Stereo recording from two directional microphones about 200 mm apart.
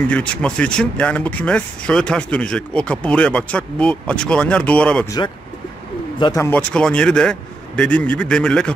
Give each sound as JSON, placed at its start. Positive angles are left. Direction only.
{"t": 0.1, "sound": "speech", "side_deg": 5}
{"t": 6.1, "sound": "speech", "side_deg": 20}